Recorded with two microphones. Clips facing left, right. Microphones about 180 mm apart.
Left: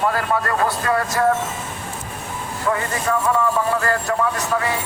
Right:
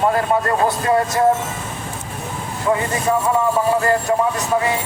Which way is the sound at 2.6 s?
20° right (ahead or behind).